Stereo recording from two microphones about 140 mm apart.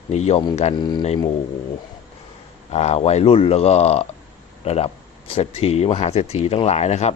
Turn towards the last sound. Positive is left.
turn(degrees=50)  # may be behind; listen again after turning